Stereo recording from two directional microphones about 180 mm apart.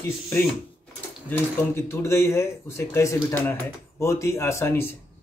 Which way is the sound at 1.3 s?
15° left (ahead or behind).